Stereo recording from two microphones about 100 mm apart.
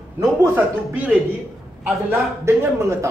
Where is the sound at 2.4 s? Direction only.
25° right (ahead or behind).